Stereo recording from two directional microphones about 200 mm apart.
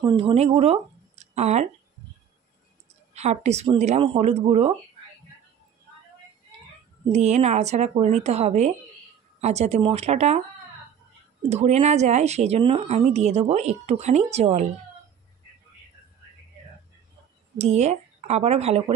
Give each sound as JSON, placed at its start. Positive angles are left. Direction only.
{"t": 0.0, "sound": "speech", "side_deg": -25}
{"t": 3.2, "sound": "speech", "side_deg": -35}
{"t": 7.1, "sound": "speech", "side_deg": -35}
{"t": 11.4, "sound": "speech", "side_deg": -35}
{"t": 17.6, "sound": "speech", "side_deg": -35}